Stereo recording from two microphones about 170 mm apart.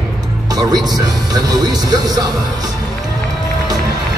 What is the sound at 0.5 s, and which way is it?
Music, 20° right (ahead or behind).